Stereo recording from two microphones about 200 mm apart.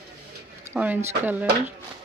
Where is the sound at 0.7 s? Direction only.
10° right (ahead or behind).